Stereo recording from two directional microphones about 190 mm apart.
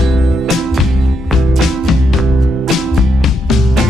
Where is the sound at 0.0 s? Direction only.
Centre (ahead or behind).